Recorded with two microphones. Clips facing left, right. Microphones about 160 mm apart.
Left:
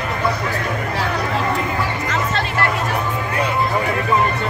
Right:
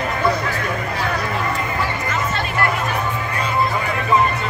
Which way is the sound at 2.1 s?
90° left.